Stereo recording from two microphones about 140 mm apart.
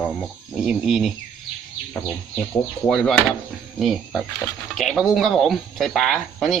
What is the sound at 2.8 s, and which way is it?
Speech, 5° left (ahead or behind).